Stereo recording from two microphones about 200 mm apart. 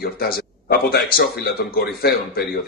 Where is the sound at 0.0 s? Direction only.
50° left (ahead or behind).